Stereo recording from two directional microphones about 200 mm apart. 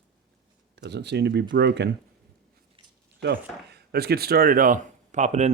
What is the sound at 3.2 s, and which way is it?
Speech, 55° right (ahead or behind).